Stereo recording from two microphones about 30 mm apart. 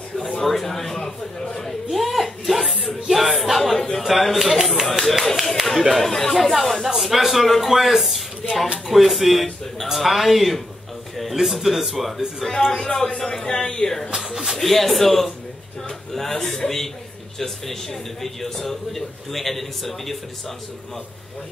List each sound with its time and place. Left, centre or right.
0.4 s a man's voice: centre
2.0 s speech: centre
3.7 s a man's voice: centre
4.0 s speech: centre
6.0 s a man's voice: centre
12.7 s a man's voice: centre
14.1 s a sound: centre
14.5 s a man's voice: centre